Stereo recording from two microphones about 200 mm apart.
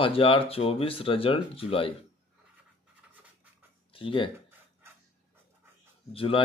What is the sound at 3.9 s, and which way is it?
Speech, 25° left (ahead or behind).